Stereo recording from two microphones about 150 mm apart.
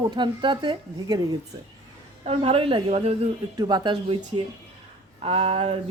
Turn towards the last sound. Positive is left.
turn(degrees=-40)  # may be behind; listen again after turning